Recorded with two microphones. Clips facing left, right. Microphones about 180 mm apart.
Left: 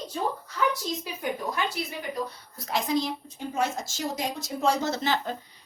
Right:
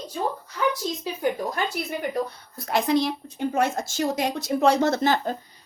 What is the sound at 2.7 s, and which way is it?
Speech, 60° right (ahead or behind).